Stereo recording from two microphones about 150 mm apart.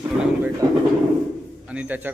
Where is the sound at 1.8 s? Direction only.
10° right (ahead or behind).